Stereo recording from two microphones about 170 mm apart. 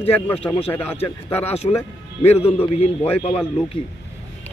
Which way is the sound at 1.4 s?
35° left (ahead or behind).